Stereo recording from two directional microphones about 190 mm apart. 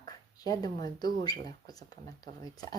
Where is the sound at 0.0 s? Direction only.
20° left (ahead or behind).